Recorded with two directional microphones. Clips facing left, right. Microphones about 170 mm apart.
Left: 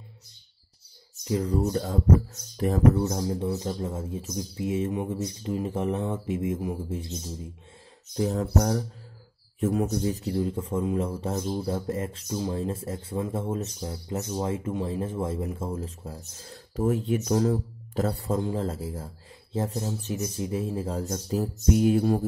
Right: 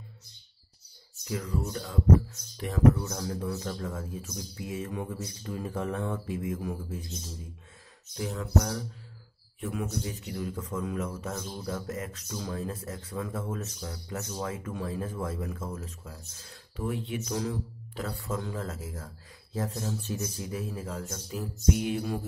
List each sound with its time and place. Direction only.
1.2 s speech: 30° left (ahead or behind)
3.1 s speech: 25° left (ahead or behind)
8.2 s speech: 40° left (ahead or behind)